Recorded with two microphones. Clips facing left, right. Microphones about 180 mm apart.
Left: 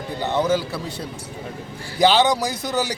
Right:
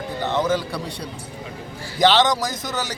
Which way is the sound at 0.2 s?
10° left (ahead or behind).